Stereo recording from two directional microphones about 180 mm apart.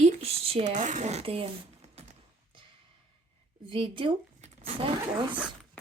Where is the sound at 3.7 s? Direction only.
30° right (ahead or behind).